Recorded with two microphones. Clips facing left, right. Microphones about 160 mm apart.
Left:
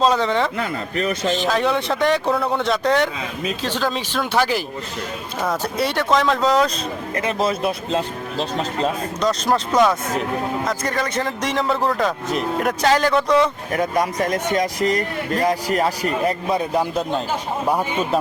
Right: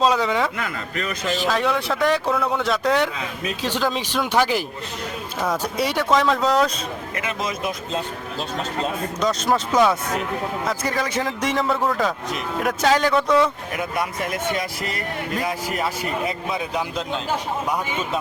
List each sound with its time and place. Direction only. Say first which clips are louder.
0.0 s speech: left 2 dB; 5° right (ahead or behind)
0.5 s a man's voice: left 4 dB; 30° left (ahead or behind)
1.3 s speech: even; centre (ahead or behind)
5.7 s speech: left 1 dB; 10° right (ahead or behind)
7.2 s speech: left 7 dB; 30° left (ahead or behind)
9.2 s speech: left 2 dB; centre (ahead or behind)
13.7 s speech: left 8 dB; 35° left (ahead or behind)
16.5 s speech: left 5 dB; 45° left (ahead or behind)